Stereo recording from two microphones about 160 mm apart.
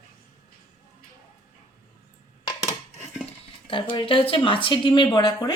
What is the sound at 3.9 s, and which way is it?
Speech, 30° left (ahead or behind).